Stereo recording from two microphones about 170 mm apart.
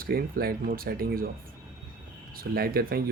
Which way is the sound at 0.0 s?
60° right (ahead or behind).